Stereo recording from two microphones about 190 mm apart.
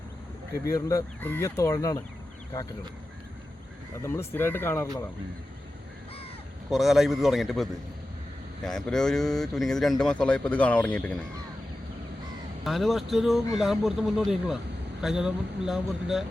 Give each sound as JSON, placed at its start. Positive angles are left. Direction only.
{"t": 0.6, "sound": "speech", "side_deg": 15}
{"t": 4.0, "sound": "speech", "side_deg": 15}
{"t": 6.7, "sound": "speech", "side_deg": 0}
{"t": 12.6, "sound": "speech", "side_deg": 0}